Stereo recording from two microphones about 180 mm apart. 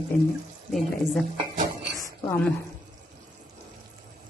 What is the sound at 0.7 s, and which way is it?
Speech, centre (ahead or behind).